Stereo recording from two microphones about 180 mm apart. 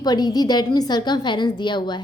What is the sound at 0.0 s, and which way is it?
A woman's voice, 20° left (ahead or behind).